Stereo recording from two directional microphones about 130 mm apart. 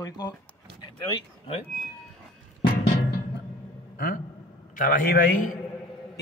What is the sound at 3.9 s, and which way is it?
A man's voice, 90° left.